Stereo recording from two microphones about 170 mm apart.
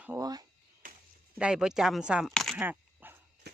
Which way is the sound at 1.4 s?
5° right (ahead or behind).